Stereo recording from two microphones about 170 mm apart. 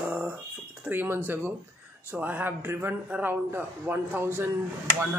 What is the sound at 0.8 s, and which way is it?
A woman's voice, 10° right (ahead or behind).